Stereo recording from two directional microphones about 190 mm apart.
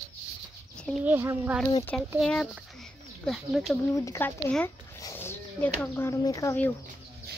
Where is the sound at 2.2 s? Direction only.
Centre (ahead or behind).